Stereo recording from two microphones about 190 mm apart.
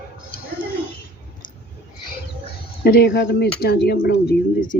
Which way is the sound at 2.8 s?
55° left (ahead or behind).